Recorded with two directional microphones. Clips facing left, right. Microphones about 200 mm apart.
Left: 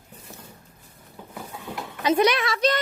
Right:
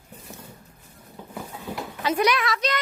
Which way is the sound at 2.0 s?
25° left (ahead or behind).